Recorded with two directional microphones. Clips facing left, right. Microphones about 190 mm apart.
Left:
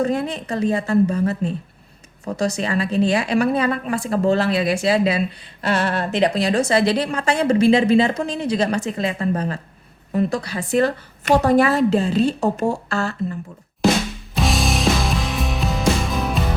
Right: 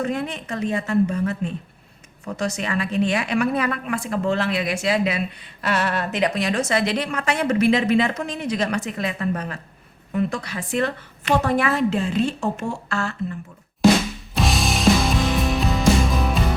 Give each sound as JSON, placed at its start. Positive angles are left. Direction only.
{"t": 0.0, "sound": "a woman's voice", "side_deg": 35}
{"t": 14.3, "sound": "music", "side_deg": 0}